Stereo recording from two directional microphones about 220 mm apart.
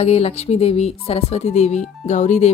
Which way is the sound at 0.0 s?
30° left (ahead or behind).